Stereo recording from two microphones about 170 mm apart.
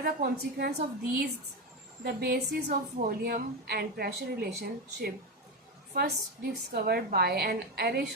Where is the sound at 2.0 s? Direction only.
65° right (ahead or behind).